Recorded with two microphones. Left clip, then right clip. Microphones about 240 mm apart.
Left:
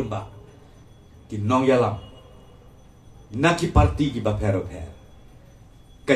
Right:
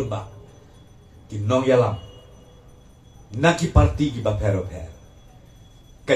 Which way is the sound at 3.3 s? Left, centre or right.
Left.